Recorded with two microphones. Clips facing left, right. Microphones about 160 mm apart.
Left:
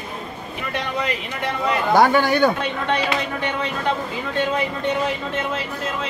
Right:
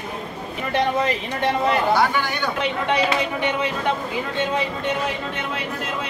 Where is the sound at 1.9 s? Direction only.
45° left (ahead or behind).